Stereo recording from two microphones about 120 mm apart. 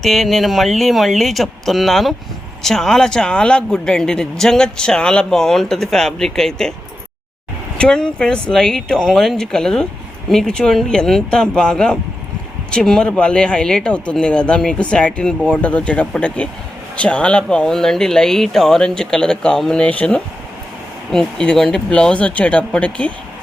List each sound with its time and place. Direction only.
0.0 s a man's voice: centre (ahead or behind)
7.8 s a man's voice: 5° left (ahead or behind)